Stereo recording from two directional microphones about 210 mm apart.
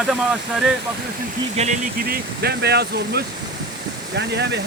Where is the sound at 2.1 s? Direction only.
50° right (ahead or behind).